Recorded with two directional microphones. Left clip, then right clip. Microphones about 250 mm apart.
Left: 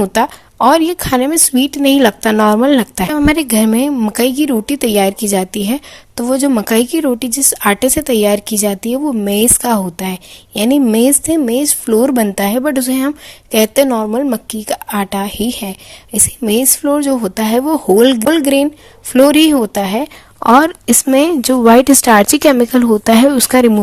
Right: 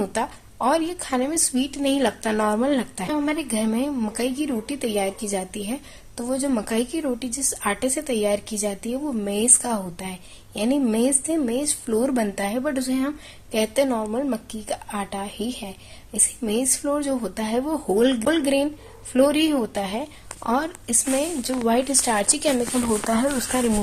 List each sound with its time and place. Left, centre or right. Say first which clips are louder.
0.0 s a woman's voice: left 12 dB; left